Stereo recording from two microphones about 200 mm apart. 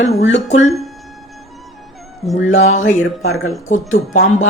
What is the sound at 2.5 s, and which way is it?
Speech, 35° left (ahead or behind).